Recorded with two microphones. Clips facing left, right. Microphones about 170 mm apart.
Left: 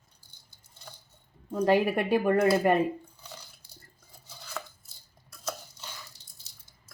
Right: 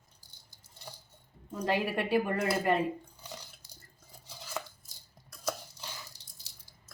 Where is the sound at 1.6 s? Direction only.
45° left (ahead or behind).